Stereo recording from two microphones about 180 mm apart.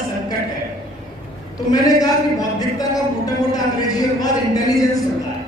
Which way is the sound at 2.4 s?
20° left (ahead or behind).